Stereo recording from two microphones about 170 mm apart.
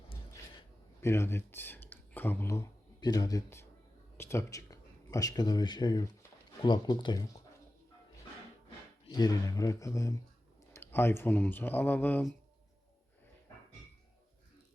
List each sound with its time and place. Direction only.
1.0 s a man's voice: 15° left (ahead or behind)
9.0 s speech: 20° left (ahead or behind)